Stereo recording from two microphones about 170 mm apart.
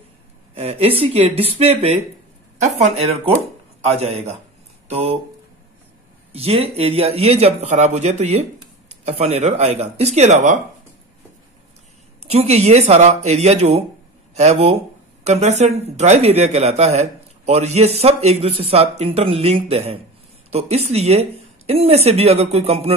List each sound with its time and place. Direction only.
0.6 s speech: 35° right (ahead or behind)
6.3 s speech: 35° right (ahead or behind)
12.2 s speech: 40° right (ahead or behind)